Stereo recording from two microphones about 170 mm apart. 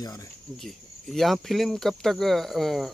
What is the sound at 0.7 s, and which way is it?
Speech, centre (ahead or behind).